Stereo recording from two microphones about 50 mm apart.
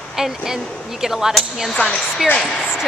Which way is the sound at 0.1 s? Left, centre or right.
Centre.